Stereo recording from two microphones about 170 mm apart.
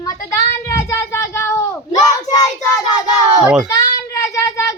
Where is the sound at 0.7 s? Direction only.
15° left (ahead or behind).